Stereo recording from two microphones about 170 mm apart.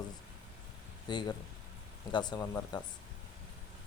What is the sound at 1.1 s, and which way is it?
Speech, 25° left (ahead or behind).